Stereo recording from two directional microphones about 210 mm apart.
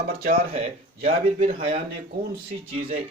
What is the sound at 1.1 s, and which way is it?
Speech, 30° right (ahead or behind).